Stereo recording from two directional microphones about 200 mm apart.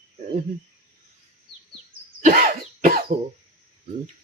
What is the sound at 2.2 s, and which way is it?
Cough, 40° right (ahead or behind).